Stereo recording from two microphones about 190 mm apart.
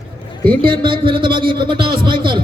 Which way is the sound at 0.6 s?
25° right (ahead or behind).